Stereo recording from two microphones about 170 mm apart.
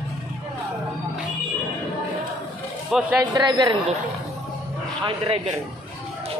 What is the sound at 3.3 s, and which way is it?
Speech, 20° right (ahead or behind).